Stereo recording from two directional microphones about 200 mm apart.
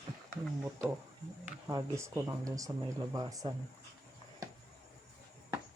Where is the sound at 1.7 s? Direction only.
15° right (ahead or behind).